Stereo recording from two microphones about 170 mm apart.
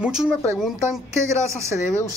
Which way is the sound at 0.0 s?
5° right (ahead or behind).